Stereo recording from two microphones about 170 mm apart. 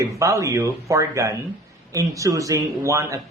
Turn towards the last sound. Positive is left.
turn(degrees=-20)  # may be behind; listen again after turning